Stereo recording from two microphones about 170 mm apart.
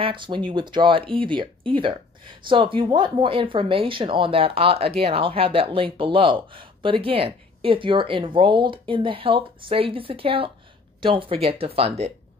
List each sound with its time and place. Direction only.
0.0 s speech: 30° right (ahead or behind)